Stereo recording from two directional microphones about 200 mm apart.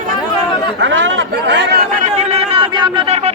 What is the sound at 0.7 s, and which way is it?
Speech, 70° right (ahead or behind).